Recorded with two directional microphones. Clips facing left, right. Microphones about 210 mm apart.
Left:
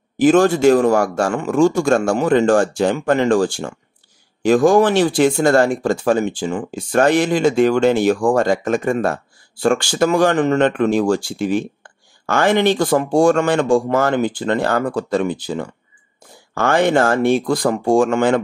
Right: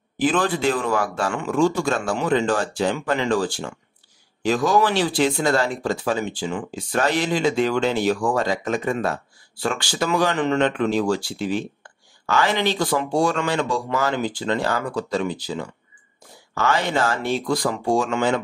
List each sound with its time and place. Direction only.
0.2 s speech: 45° left (ahead or behind)